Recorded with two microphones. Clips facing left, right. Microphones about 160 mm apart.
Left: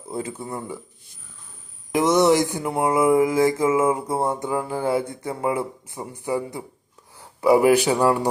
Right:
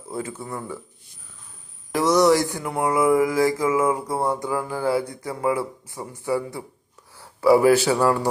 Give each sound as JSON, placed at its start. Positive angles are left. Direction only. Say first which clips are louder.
{"t": 0.1, "sound": "mantra", "louder": "left 1 dB", "side_deg": 20}
{"t": 1.9, "sound": "mantra", "louder": "even", "side_deg": 20}
{"t": 7.2, "sound": "speech", "louder": "even", "side_deg": 20}